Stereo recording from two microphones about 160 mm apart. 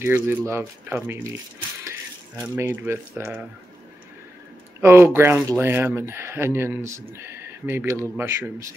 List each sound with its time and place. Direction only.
0.0 s speech: 10° right (ahead or behind)
2.4 s speech: 15° right (ahead or behind)
4.8 s speech: 15° right (ahead or behind)